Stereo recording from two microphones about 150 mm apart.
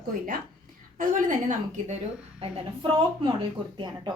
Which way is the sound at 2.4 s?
35° right (ahead or behind).